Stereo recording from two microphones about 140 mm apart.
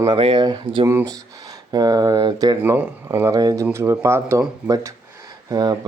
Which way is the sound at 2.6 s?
15° right (ahead or behind).